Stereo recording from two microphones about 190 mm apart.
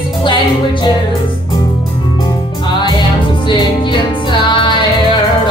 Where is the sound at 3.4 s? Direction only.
25° left (ahead or behind).